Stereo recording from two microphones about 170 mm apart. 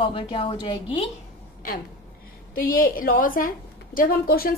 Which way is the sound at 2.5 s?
55° left (ahead or behind).